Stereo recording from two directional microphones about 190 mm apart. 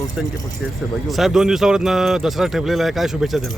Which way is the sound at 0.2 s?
5° right (ahead or behind).